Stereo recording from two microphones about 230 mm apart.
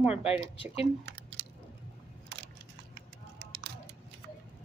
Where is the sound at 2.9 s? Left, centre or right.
Right.